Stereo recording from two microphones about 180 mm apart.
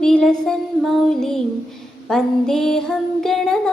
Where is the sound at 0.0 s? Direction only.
5° left (ahead or behind).